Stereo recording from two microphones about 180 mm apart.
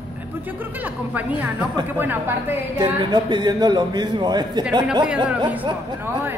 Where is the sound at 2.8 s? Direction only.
25° right (ahead or behind).